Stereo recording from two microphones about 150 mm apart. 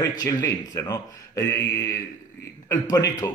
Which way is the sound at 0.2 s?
25° left (ahead or behind).